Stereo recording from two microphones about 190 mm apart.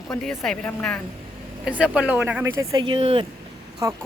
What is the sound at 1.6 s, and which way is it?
Speech, 5° right (ahead or behind).